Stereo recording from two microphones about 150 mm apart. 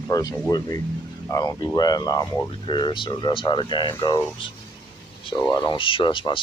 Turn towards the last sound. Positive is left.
turn(degrees=35)  # may be behind; listen again after turning